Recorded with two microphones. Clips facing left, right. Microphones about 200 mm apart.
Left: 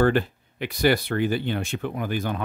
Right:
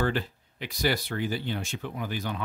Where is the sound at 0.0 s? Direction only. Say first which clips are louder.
Left 8 dB; 55° left (ahead or behind).